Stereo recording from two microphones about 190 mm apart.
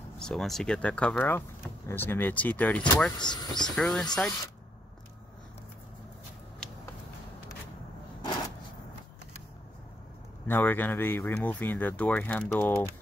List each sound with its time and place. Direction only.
0.2 s speech: centre (ahead or behind)
3.2 s speech: 20° left (ahead or behind)
3.7 s speech: 5° left (ahead or behind)
10.4 s speech: 10° left (ahead or behind)